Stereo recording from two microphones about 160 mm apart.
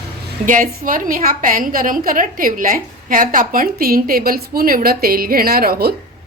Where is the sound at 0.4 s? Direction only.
55° right (ahead or behind); by 5.9 s 70° right (ahead or behind).